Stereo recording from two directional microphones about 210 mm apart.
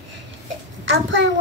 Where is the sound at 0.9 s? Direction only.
60° right (ahead or behind).